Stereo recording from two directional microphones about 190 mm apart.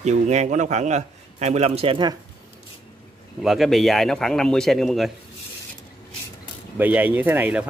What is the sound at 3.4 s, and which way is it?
Speech, centre (ahead or behind).